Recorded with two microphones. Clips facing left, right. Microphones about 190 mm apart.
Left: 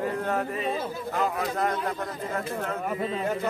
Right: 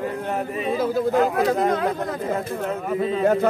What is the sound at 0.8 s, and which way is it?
Speech, 90° right.